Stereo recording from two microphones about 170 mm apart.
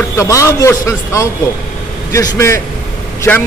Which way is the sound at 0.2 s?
20° left (ahead or behind).